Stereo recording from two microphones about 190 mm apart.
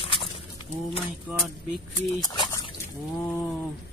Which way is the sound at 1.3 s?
10° right (ahead or behind).